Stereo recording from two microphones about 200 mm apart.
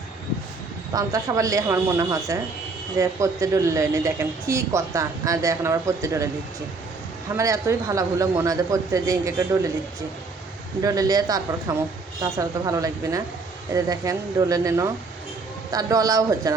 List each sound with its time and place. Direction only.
0.9 s speech: 15° right (ahead or behind)
7.3 s speech: 15° right (ahead or behind)
10.8 s speech: 20° right (ahead or behind)